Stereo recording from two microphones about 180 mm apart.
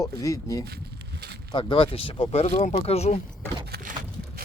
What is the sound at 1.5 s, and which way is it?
Speech, 30° left (ahead or behind).